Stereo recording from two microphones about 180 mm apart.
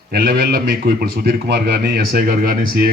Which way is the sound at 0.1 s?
55° right (ahead or behind).